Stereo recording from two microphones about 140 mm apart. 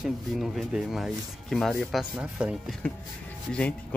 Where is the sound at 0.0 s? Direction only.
Centre (ahead or behind).